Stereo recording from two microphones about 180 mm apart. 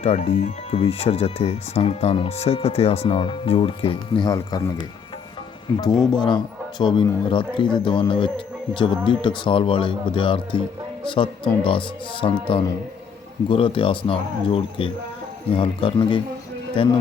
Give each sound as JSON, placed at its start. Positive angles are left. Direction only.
{"t": 0.0, "sound": "speech", "side_deg": 40}
{"t": 6.1, "sound": "speech", "side_deg": 25}